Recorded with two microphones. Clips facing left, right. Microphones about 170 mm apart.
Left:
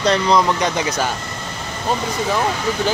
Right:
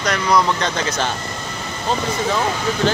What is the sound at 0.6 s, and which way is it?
Speech, 15° left (ahead or behind).